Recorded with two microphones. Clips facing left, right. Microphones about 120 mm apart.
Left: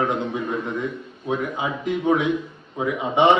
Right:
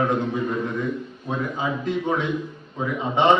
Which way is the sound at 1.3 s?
15° left (ahead or behind).